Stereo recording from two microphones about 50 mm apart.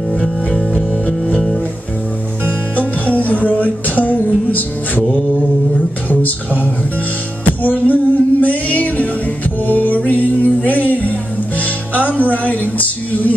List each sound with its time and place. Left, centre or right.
0.1 s music: centre
2.7 s music: left
6.0 s speech: left
7.6 s music: left